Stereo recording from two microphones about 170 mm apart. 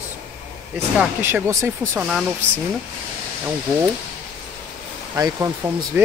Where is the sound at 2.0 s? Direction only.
5° right (ahead or behind).